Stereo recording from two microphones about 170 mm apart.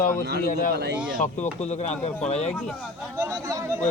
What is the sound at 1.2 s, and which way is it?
A man's voice, 45° left (ahead or behind).